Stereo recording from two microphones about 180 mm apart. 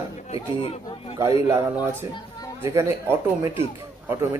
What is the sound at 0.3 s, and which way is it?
Speech, 30° left (ahead or behind).